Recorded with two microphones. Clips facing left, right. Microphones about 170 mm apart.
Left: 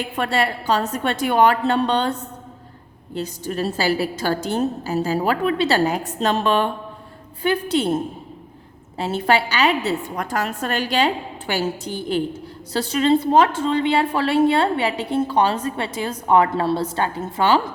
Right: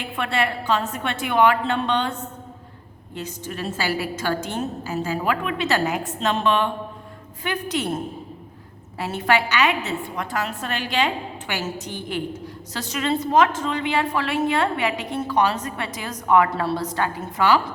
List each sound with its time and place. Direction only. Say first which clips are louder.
0.2 s a woman's voice: left 2 dB; 40° left (ahead or behind)
3.2 s a woman's voice: left 6 dB; 35° left (ahead or behind)